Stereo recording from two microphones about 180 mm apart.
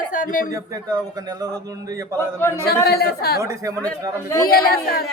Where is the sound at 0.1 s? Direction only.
50° left (ahead or behind).